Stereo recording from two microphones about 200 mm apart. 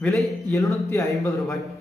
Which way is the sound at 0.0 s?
10° left (ahead or behind).